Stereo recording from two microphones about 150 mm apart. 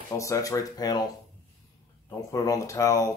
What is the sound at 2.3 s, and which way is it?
Speech, 20° left (ahead or behind).